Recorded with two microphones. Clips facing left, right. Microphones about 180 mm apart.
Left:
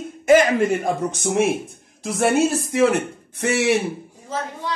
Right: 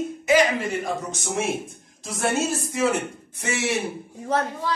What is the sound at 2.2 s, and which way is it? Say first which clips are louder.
A man's voice: left 6 dB; 65° left (ahead or behind).